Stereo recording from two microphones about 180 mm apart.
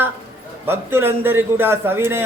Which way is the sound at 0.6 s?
15° right (ahead or behind).